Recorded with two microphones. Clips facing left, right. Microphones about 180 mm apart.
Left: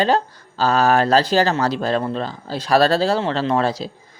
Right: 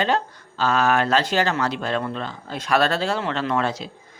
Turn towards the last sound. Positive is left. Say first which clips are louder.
# left 4 dB
turn(degrees=35)  # may be behind; listen again after turning